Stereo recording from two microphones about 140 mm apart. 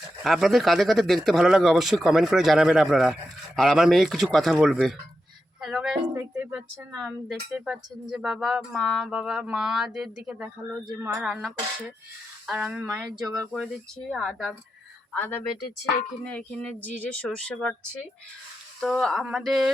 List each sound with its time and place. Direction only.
0.2 s speech: centre (ahead or behind)
6.1 s speech: 20° right (ahead or behind)
6.5 s speech: 10° right (ahead or behind)
12.5 s speech: 5° right (ahead or behind)
13.1 s speech: 25° right (ahead or behind)
14.1 s speech: 5° left (ahead or behind)
18.8 s speech: centre (ahead or behind)